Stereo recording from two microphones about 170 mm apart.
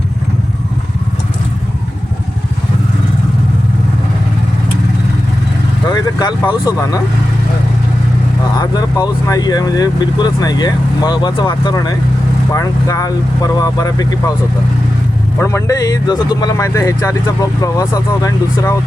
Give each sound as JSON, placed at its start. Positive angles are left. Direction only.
{"t": 5.9, "sound": "speech", "side_deg": 25}
{"t": 8.5, "sound": "speech", "side_deg": 20}
{"t": 15.4, "sound": "speech", "side_deg": 15}